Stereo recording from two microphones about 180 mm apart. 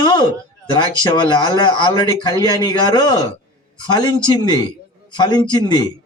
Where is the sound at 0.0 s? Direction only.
25° left (ahead or behind).